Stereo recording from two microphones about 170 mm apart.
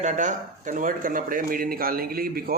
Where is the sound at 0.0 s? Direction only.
50° right (ahead or behind).